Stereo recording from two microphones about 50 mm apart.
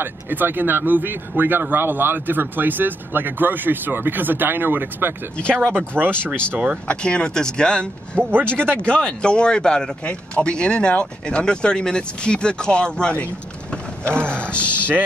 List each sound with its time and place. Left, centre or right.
0.0 s speech: right
5.4 s speech: centre
8.2 s speech: right
8.5 s speech: left
14.4 s speech: left